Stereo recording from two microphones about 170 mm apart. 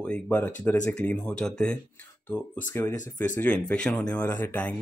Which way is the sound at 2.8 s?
15° left (ahead or behind).